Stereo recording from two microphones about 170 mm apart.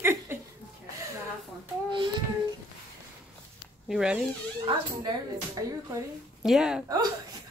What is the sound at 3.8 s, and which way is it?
Speech, 5° right (ahead or behind).